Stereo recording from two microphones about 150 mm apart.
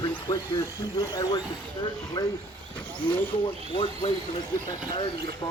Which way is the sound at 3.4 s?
35° left (ahead or behind).